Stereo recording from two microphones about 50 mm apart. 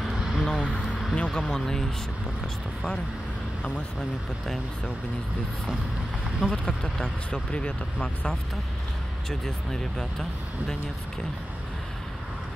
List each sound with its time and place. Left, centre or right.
0.4 s speech: centre
1.4 s speech: centre
6.4 s speech: left
9.3 s speech: centre